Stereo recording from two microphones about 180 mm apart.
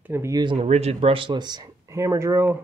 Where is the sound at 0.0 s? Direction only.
15° right (ahead or behind).